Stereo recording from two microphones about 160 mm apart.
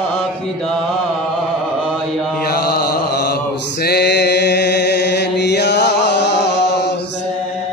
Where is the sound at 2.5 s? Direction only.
75° left (ahead or behind); by 6.9 s 90° left.